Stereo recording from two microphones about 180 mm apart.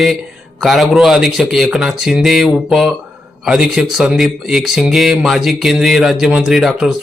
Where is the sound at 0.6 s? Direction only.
Centre (ahead or behind).